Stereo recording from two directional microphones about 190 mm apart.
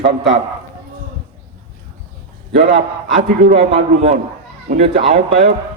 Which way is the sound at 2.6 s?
40° right (ahead or behind).